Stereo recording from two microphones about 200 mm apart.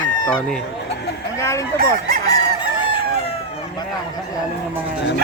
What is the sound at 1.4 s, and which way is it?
Speech, 15° left (ahead or behind).